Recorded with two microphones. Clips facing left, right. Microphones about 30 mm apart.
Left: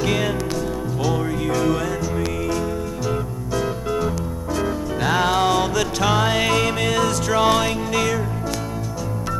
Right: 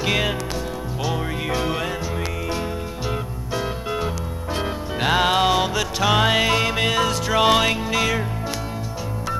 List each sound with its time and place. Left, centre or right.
0.0 s music: right
1.4 s music: right
6.1 s music: right
6.4 s music: right